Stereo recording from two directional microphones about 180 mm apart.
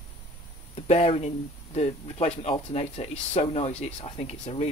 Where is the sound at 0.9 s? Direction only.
35° left (ahead or behind).